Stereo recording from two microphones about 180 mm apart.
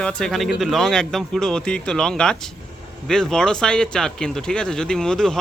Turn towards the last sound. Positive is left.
turn(degrees=5)  # may be behind; listen again after turning